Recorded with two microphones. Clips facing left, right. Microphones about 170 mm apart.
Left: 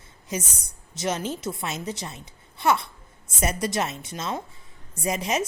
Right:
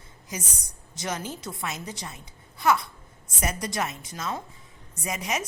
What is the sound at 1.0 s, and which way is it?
A woman's voice, 20° left (ahead or behind).